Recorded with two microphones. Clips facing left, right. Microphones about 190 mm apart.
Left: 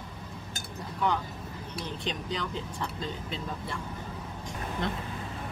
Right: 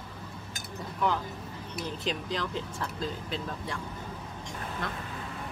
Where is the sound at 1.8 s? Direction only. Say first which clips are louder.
Right 2 dB; centre (ahead or behind).